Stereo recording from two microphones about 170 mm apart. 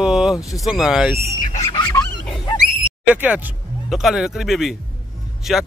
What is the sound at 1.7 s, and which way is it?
Goose, 25° left (ahead or behind).